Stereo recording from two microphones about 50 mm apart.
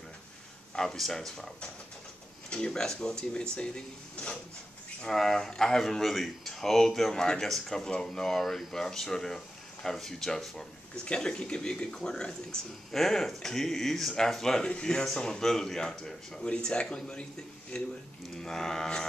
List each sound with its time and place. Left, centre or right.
0.7 s speech: centre
2.5 s speech: centre
14.6 s speech: centre